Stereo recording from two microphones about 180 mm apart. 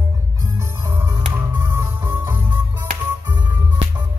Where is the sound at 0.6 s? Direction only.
15° right (ahead or behind).